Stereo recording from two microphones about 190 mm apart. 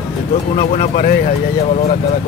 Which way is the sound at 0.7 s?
40° left (ahead or behind).